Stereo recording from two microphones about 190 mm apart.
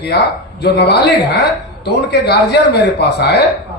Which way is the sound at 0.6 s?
60° left (ahead or behind).